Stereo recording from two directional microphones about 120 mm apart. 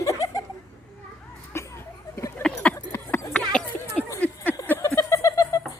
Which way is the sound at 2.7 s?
25° left (ahead or behind).